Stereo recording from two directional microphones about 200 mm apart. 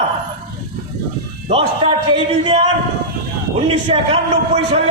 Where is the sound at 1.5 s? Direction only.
25° right (ahead or behind).